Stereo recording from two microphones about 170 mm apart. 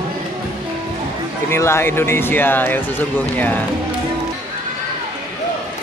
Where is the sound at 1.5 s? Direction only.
15° left (ahead or behind).